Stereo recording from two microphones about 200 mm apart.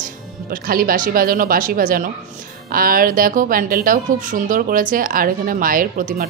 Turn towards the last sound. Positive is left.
turn(degrees=-45)  # may be behind; listen again after turning